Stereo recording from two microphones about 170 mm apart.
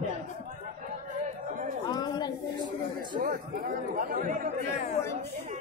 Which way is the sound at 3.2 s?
50° right (ahead or behind).